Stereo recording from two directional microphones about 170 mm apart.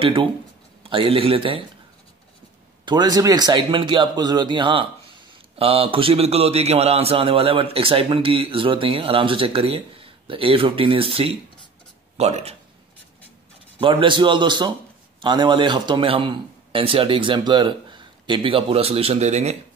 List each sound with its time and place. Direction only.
0.0 s a man's voice: 30° right (ahead or behind)
2.8 s a man's voice: 25° right (ahead or behind)
13.7 s a man's voice: 30° right (ahead or behind)